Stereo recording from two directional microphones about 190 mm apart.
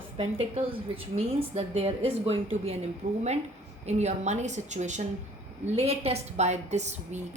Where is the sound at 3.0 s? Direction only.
40° right (ahead or behind).